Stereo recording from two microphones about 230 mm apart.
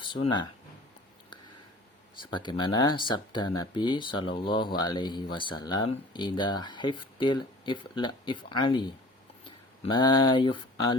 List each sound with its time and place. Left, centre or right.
0.0 s speech: left
2.3 s speech: centre